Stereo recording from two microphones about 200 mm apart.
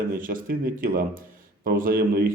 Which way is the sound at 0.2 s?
45° right (ahead or behind).